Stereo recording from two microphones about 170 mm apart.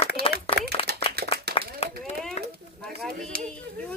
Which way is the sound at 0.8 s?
35° left (ahead or behind).